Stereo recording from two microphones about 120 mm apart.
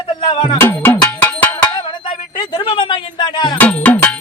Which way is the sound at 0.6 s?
20° left (ahead or behind).